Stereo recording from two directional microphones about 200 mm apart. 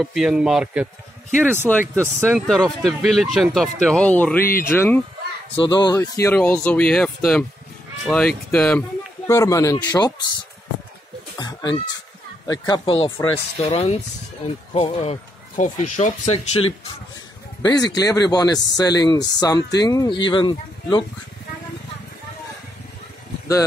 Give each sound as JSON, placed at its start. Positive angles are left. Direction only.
{"t": 0.0, "sound": "speech", "side_deg": 0}
{"t": 1.7, "sound": "speech", "side_deg": 10}
{"t": 5.6, "sound": "speech", "side_deg": 20}
{"t": 8.5, "sound": "speech", "side_deg": 5}
{"t": 9.3, "sound": "speech", "side_deg": 15}
{"t": 11.3, "sound": "a sound", "side_deg": 20}
{"t": 12.4, "sound": "speech", "side_deg": 20}
{"t": 17.6, "sound": "speech", "side_deg": 20}